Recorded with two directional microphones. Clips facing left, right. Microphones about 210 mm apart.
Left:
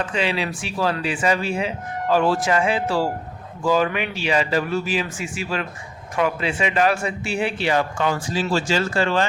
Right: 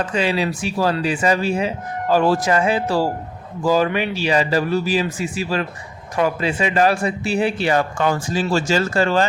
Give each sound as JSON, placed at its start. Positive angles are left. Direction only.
{"t": 0.0, "sound": "speech", "side_deg": -40}